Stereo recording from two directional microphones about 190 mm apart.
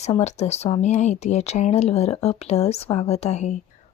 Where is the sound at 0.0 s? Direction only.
35° left (ahead or behind).